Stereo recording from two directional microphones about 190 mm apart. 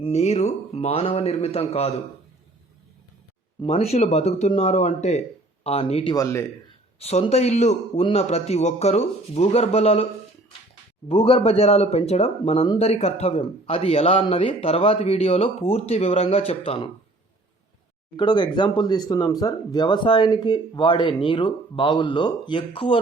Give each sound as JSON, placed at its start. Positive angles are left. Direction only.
{"t": 0.0, "sound": "speech", "side_deg": 35}
{"t": 3.6, "sound": "speech", "side_deg": 35}
{"t": 11.1, "sound": "speech", "side_deg": 30}
{"t": 18.2, "sound": "speech", "side_deg": 25}